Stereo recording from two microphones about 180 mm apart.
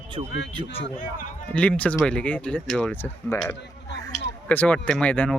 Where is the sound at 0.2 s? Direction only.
30° right (ahead or behind).